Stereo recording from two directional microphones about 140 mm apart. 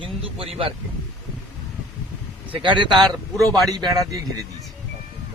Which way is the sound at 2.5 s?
35° right (ahead or behind).